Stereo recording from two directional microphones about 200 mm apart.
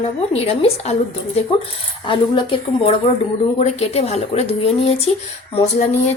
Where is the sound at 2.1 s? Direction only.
25° left (ahead or behind).